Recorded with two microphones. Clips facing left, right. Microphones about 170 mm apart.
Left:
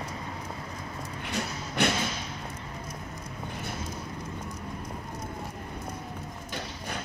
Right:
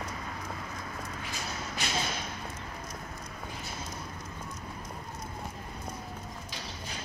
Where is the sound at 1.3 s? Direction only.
65° left (ahead or behind).